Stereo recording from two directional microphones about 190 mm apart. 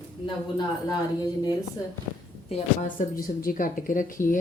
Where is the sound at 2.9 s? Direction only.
50° left (ahead or behind).